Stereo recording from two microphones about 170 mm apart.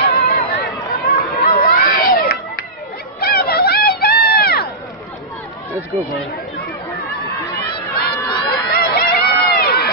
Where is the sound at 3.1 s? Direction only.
65° left (ahead or behind).